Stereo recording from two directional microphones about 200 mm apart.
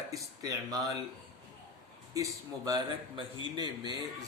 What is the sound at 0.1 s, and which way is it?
Speech, 15° right (ahead or behind).